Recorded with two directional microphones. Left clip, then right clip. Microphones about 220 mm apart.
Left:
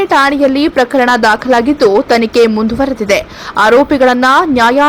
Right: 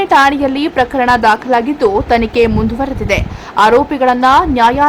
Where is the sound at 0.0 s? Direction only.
10° left (ahead or behind).